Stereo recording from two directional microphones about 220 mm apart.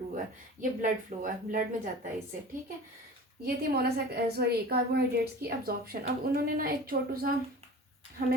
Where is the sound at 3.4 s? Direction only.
45° right (ahead or behind).